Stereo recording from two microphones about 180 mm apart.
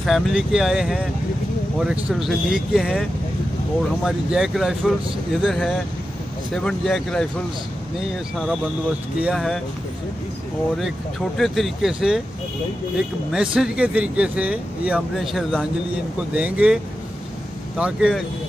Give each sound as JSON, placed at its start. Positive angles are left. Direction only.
{"t": 0.0, "sound": "speech", "side_deg": 0}
{"t": 9.2, "sound": "speech", "side_deg": 0}
{"t": 10.8, "sound": "speech", "side_deg": 0}